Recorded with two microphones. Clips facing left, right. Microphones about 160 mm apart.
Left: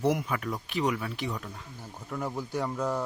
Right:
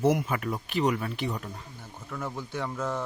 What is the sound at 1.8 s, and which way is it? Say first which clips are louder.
Speech: left 2 dB; 10° left (ahead or behind).